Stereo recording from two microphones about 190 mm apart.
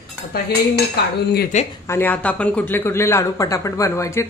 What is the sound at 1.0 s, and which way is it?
Speech, 60° left (ahead or behind).